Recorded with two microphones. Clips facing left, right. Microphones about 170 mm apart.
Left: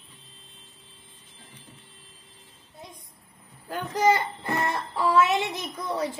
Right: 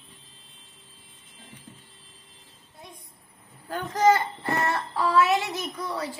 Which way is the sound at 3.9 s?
15° left (ahead or behind).